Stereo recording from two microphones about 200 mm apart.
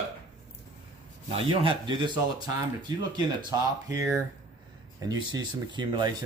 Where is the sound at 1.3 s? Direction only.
25° right (ahead or behind).